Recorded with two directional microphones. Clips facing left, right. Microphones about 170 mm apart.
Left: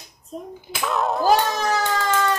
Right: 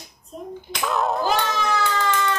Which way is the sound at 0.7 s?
5° left (ahead or behind).